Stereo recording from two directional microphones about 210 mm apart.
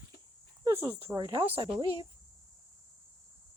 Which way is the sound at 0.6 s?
15° right (ahead or behind).